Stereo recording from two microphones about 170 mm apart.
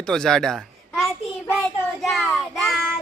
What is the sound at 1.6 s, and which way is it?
Child singing, centre (ahead or behind).